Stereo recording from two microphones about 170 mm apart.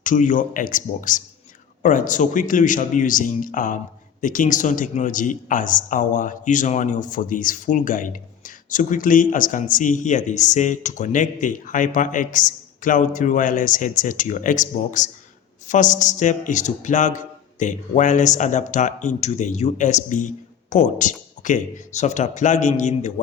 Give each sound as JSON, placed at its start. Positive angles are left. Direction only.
{"t": 0.0, "sound": "speech", "side_deg": 50}